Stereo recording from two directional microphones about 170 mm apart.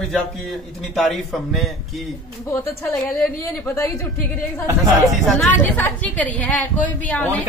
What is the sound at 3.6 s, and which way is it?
Speech, 15° left (ahead or behind).